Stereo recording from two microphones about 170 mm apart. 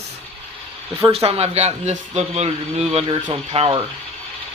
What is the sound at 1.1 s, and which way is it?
Speech, 35° right (ahead or behind).